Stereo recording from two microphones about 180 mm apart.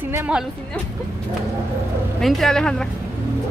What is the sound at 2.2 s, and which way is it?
Speech, centre (ahead or behind).